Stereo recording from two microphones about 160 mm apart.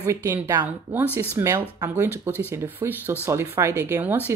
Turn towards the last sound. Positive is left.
turn(degrees=-10)  # may be behind; listen again after turning